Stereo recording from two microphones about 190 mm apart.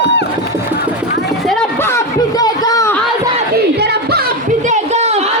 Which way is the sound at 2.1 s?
20° left (ahead or behind).